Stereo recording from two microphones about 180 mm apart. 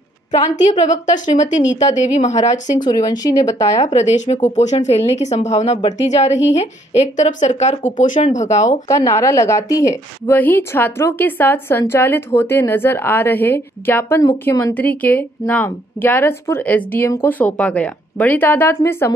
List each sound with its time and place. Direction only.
0.3 s a woman's voice: 40° left (ahead or behind)
2.8 s speech: 25° left (ahead or behind)
3.7 s speech: 40° left (ahead or behind)
8.8 s a woman's voice: 15° left (ahead or behind)